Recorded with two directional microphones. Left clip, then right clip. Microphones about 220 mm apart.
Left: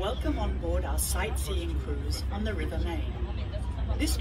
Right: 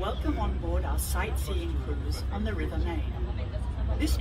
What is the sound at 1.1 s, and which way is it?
Speech, 40° left (ahead or behind).